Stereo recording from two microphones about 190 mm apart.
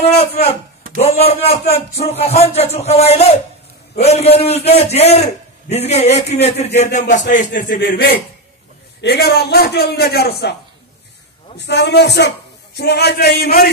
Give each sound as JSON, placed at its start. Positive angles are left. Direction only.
{"t": 0.9, "sound": "a man's voice", "side_deg": 35}
{"t": 11.5, "sound": "a man's voice", "side_deg": 65}